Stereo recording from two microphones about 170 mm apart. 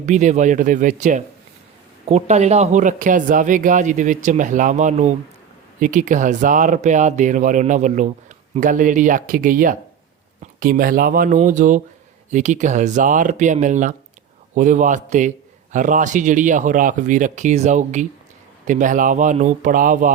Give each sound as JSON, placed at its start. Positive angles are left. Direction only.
{"t": 0.0, "sound": "a man's voice", "side_deg": -45}